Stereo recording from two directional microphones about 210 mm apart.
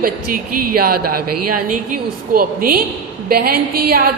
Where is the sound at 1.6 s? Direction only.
40° right (ahead or behind).